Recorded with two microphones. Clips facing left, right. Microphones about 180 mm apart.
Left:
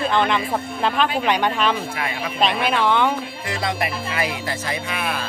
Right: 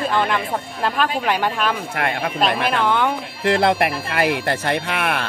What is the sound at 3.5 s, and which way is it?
Speech, 60° right (ahead or behind).